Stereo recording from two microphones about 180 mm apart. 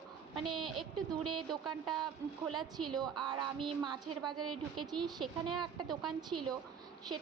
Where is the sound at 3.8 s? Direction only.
25° right (ahead or behind).